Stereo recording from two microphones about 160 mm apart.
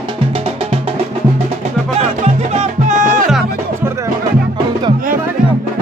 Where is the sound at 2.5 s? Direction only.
45° right (ahead or behind).